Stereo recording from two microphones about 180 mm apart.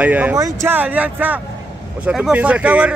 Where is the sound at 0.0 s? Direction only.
5° right (ahead or behind).